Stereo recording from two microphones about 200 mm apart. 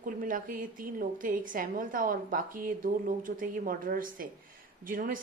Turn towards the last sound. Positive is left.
turn(degrees=-45)  # may be behind; listen again after turning